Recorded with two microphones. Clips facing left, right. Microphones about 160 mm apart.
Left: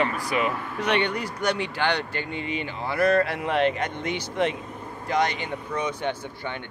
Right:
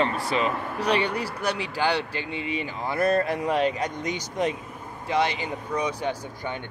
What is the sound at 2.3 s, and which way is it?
Speech, 35° left (ahead or behind).